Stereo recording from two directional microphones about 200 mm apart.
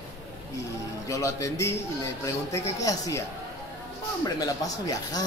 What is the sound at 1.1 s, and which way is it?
A man's voice, 15° left (ahead or behind).